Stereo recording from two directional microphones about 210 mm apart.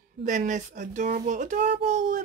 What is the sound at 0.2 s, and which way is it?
Speech, 35° right (ahead or behind).